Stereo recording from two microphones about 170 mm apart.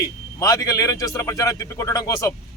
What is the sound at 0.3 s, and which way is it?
A man's voice, 20° left (ahead or behind).